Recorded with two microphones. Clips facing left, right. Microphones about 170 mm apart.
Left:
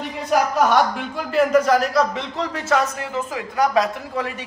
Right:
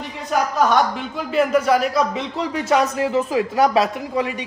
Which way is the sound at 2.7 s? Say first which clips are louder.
Right 4 dB; 20° right (ahead or behind).